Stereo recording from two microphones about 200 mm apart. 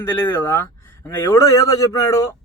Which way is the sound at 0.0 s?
10° left (ahead or behind).